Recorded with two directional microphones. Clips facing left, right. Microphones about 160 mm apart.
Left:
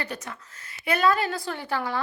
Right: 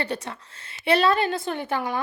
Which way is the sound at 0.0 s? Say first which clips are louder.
Right 5 dB; 30° right (ahead or behind).